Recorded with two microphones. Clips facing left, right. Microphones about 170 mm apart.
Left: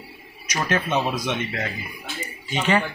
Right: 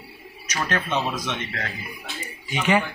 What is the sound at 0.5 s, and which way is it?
Speech, 10° left (ahead or behind).